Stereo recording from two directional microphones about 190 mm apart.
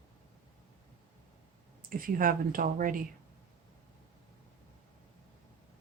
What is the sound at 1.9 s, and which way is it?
Speech, 50° right (ahead or behind).